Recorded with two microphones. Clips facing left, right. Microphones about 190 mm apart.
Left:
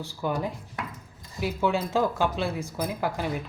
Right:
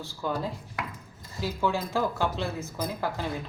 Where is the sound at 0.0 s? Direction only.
15° left (ahead or behind).